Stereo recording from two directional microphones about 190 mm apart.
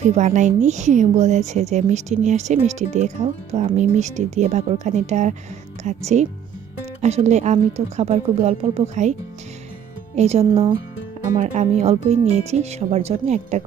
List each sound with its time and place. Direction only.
0.0 s a woman's voice: 40° right (ahead or behind)
7.0 s a woman's voice: 35° right (ahead or behind)
10.2 s a woman's voice: 35° right (ahead or behind)
11.3 s a woman's voice: 40° right (ahead or behind)